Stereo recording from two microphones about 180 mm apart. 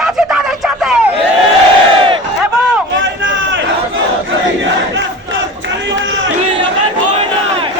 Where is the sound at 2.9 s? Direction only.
90° right.